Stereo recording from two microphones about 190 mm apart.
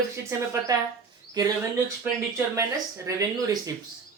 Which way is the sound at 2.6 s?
20° right (ahead or behind).